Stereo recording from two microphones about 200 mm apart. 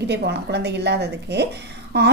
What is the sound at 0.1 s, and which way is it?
A woman's voice, 55° right (ahead or behind).